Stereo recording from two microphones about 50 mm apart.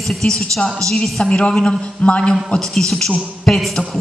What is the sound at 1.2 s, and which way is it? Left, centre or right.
A woman's voice, centre.